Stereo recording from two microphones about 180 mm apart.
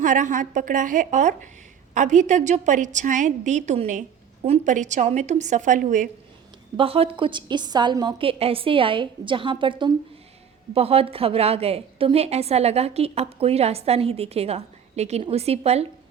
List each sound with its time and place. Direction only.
0.0 s a woman's voice: 45° right (ahead or behind)
6.7 s a woman's voice: 30° right (ahead or behind)